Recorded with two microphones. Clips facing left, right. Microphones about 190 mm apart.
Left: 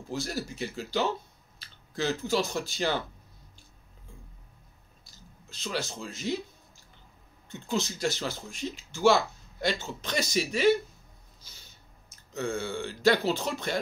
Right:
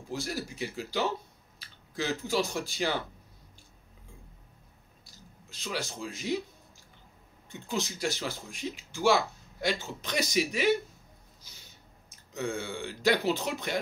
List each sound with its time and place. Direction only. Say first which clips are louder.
0.1 s speech: left 1 dB; 10° right (ahead or behind)
5.5 s speech: left 2 dB; 10° right (ahead or behind)
7.4 s speech: left 3 dB; 15° right (ahead or behind)
12.4 s speech: left 2 dB; 15° right (ahead or behind)